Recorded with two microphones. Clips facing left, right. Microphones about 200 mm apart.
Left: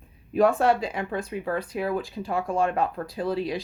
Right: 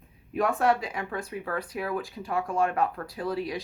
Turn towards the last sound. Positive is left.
turn(degrees=25)  # may be behind; listen again after turning